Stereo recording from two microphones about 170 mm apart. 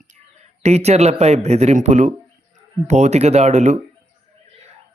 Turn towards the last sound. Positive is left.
turn(degrees=-45)  # may be behind; listen again after turning